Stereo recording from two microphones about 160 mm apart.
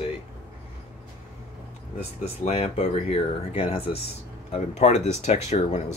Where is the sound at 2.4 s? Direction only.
40° left (ahead or behind).